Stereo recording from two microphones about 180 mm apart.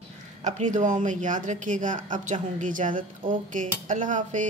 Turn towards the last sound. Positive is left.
turn(degrees=-45)  # may be behind; listen again after turning